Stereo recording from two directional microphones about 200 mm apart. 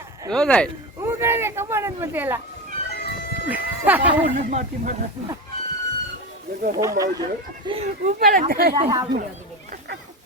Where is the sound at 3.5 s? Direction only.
10° right (ahead or behind).